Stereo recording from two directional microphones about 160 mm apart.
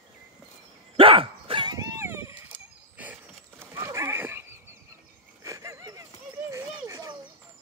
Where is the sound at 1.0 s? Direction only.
35° right (ahead or behind); by 3.2 s 10° right (ahead or behind).